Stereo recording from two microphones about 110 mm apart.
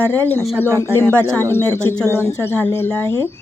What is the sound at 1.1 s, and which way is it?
Speech, 20° right (ahead or behind).